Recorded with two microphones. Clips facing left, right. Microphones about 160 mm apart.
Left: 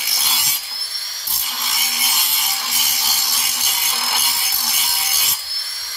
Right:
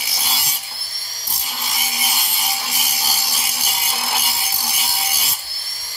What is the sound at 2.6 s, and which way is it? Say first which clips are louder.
Sawing: right 2 dB; 10° right (ahead or behind).